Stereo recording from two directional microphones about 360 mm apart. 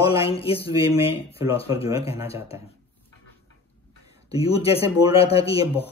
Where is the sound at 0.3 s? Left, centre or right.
Centre.